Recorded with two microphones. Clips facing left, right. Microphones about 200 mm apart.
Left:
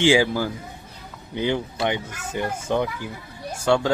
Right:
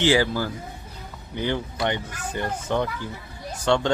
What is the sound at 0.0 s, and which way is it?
Speech, 15° left (ahead or behind).